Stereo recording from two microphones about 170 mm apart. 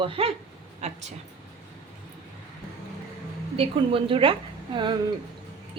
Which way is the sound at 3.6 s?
30° right (ahead or behind).